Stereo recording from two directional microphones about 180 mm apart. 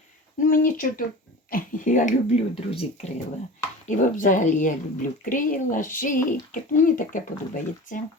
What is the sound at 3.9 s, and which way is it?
Speech, 45° left (ahead or behind).